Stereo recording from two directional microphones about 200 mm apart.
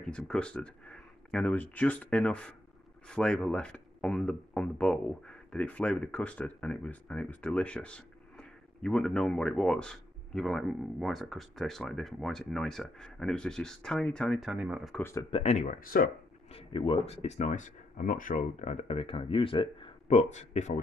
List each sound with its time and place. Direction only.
0.0 s speech: 5° left (ahead or behind)
15.0 s speech: 10° left (ahead or behind)
15.3 s speech: 35° left (ahead or behind)
16.5 s speech: 25° left (ahead or behind)